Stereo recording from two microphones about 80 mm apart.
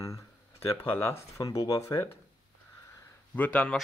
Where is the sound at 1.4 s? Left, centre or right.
Left.